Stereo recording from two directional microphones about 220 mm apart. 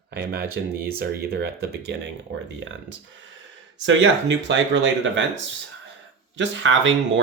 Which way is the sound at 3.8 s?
60° right (ahead or behind).